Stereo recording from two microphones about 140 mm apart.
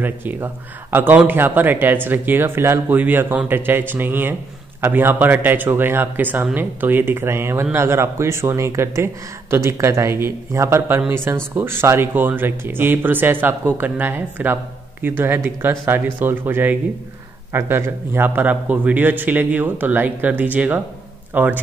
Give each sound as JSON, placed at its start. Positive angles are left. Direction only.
{"t": 0.0, "sound": "speech", "side_deg": -15}